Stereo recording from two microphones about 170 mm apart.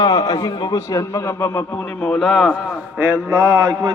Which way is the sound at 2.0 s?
Centre (ahead or behind).